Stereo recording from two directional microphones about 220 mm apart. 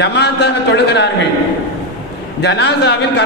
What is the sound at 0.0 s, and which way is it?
A man's voice, 50° left (ahead or behind).